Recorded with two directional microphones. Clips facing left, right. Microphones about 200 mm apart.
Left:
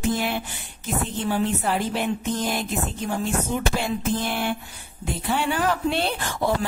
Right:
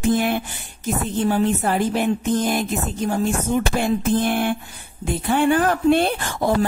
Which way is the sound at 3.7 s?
50° right (ahead or behind).